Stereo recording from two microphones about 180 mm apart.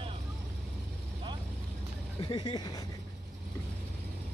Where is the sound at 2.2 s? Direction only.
25° left (ahead or behind).